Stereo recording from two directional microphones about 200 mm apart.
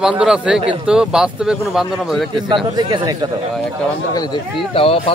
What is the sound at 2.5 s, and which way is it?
Speech, 25° right (ahead or behind).